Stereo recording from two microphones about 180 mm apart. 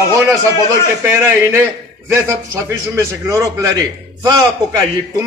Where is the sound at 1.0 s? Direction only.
15° right (ahead or behind).